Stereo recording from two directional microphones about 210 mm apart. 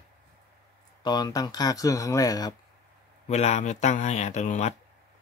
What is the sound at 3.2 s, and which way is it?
Speech, 30° left (ahead or behind).